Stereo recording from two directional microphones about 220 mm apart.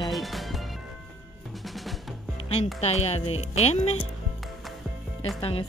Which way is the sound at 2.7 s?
30° left (ahead or behind).